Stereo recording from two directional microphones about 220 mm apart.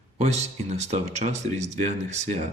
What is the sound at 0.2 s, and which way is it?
Speech, 30° right (ahead or behind).